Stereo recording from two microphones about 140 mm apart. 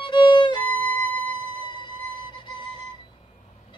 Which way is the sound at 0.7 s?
10° left (ahead or behind).